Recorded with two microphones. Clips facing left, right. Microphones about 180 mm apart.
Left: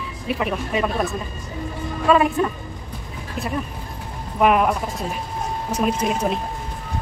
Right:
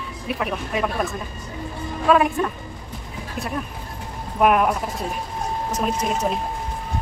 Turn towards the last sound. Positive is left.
turn(degrees=5)  # may be behind; listen again after turning